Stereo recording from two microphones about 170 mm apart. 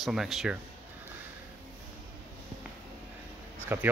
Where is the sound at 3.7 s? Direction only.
15° right (ahead or behind).